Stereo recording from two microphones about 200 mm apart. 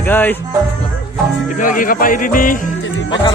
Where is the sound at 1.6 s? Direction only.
40° left (ahead or behind).